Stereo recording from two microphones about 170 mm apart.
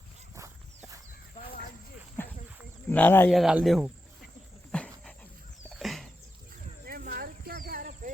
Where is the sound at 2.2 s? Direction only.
10° left (ahead or behind).